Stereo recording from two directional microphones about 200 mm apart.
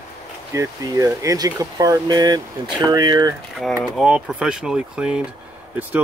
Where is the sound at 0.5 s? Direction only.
15° right (ahead or behind).